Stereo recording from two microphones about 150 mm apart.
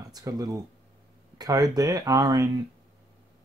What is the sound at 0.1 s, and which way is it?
Speech, 25° right (ahead or behind).